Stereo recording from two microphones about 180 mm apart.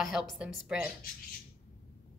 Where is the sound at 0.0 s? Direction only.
Centre (ahead or behind).